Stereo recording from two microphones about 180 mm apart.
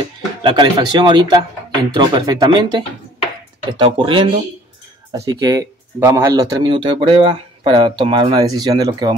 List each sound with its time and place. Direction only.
0.4 s speech: 25° right (ahead or behind)